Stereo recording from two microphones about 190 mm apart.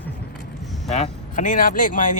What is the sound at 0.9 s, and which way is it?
Speech, 40° left (ahead or behind).